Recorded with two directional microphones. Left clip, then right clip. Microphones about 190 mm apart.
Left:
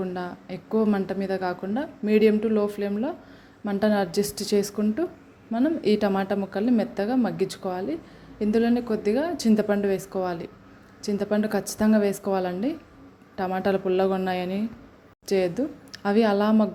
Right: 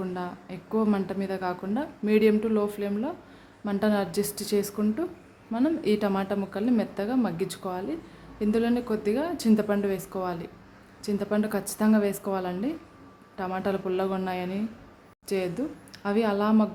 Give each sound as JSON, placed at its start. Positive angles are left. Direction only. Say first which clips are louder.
{"t": 0.0, "sound": "a woman's voice", "louder": "left 2 dB", "side_deg": 15}